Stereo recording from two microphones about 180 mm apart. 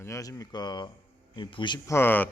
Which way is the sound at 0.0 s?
15° left (ahead or behind).